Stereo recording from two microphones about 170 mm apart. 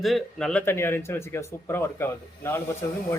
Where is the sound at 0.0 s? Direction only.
Centre (ahead or behind).